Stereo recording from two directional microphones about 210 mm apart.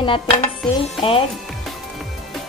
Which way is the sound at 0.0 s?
30° left (ahead or behind).